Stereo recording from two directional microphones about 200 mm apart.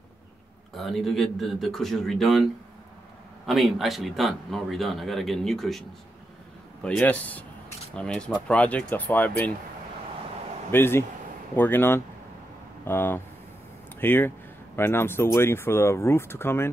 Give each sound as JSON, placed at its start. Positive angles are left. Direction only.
{"t": 0.7, "sound": "speech", "side_deg": 0}
{"t": 10.7, "sound": "speech", "side_deg": 10}